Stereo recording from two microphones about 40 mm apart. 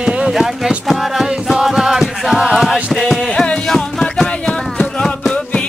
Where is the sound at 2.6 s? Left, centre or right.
Centre.